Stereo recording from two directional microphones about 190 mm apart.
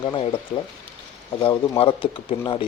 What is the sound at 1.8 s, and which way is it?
Speech, 30° left (ahead or behind).